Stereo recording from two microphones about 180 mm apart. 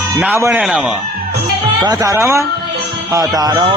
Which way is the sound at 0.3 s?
15° right (ahead or behind).